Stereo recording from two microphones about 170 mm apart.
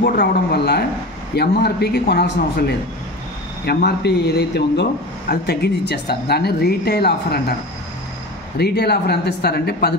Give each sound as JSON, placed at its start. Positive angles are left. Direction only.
{"t": 0.0, "sound": "a man's voice", "side_deg": 70}
{"t": 3.6, "sound": "speech", "side_deg": 70}
{"t": 8.5, "sound": "speech", "side_deg": 70}